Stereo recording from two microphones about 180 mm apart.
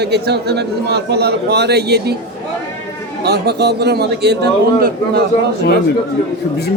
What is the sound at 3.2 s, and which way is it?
A man's voice, 65° right (ahead or behind).